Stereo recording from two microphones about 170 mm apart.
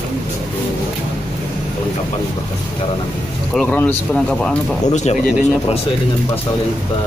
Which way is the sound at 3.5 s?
5° left (ahead or behind).